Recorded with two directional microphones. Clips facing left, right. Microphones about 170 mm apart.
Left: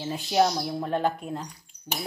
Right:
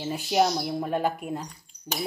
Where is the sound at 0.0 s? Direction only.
5° right (ahead or behind).